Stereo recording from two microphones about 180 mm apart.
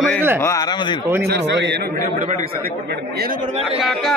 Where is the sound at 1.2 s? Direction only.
70° right (ahead or behind).